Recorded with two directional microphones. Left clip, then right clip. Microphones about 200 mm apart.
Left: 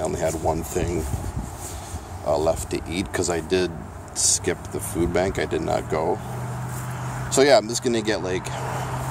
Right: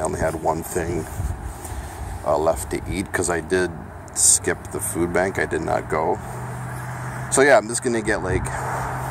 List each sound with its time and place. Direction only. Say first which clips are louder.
0.0 s speech: right 1 dB; 5° left (ahead or behind)
2.2 s speech: right 2 dB; centre (ahead or behind)
7.2 s speech: right 1 dB; 5° left (ahead or behind)